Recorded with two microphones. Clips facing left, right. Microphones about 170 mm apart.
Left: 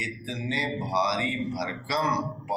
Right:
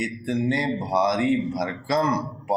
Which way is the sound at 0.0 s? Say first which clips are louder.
Right 10 dB; 50° right (ahead or behind).